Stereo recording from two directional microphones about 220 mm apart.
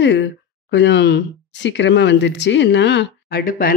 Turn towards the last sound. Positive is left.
turn(degrees=40)  # may be behind; listen again after turning